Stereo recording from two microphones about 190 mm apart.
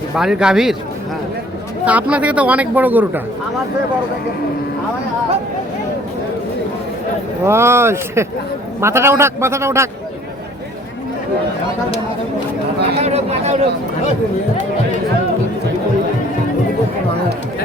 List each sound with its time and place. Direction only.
0.2 s speech: 5° right (ahead or behind)
1.8 s speech: 5° right (ahead or behind)
7.4 s speech: 15° right (ahead or behind)
13.0 s speech: 35° right (ahead or behind)